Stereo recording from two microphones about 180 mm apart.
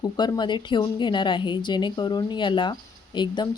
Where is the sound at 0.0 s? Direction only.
25° left (ahead or behind).